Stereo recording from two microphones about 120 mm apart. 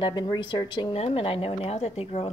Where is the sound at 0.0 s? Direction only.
40° left (ahead or behind).